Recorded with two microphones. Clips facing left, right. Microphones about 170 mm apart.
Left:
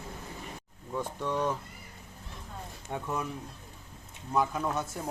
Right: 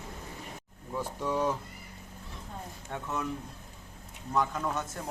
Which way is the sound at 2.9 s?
10° left (ahead or behind).